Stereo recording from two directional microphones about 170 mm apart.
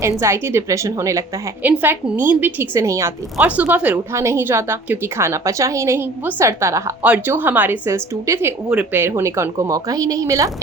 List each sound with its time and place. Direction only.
0.0 s a woman's voice: 15° right (ahead or behind)